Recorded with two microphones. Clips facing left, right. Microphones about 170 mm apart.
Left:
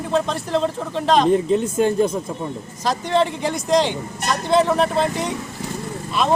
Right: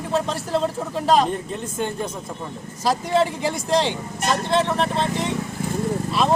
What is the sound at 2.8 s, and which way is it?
Speech, 5° right (ahead or behind).